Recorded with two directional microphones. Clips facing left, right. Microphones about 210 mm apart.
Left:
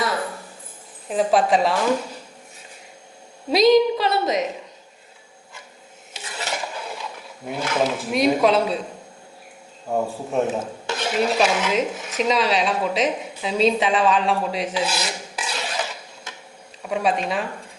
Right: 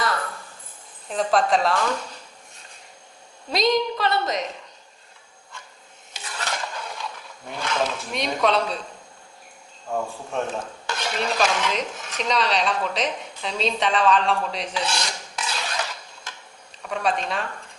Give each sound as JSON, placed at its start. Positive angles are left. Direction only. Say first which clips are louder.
{"t": 1.0, "sound": "a woman's voice", "louder": "left 3 dB", "side_deg": 5}
{"t": 3.5, "sound": "a woman's voice", "louder": "left 7 dB", "side_deg": 5}
{"t": 6.4, "sound": "a sound", "louder": "left 2 dB", "side_deg": 5}
{"t": 9.9, "sound": "a man's voice", "louder": "left 4 dB", "side_deg": 20}
{"t": 10.3, "sound": "a woman's voice", "louder": "left 5 dB", "side_deg": 5}
{"t": 10.8, "sound": "dishes", "louder": "left 5 dB", "side_deg": 5}
{"t": 16.8, "sound": "a woman's voice", "louder": "left 3 dB", "side_deg": 5}